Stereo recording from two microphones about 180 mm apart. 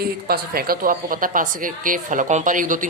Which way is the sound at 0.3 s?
55° right (ahead or behind).